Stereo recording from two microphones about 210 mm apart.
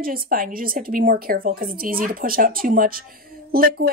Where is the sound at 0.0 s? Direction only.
45° right (ahead or behind).